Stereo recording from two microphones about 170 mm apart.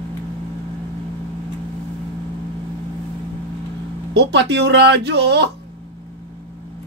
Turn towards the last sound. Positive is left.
turn(degrees=-90)